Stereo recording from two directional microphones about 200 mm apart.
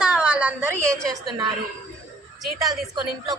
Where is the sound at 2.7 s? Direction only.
20° right (ahead or behind).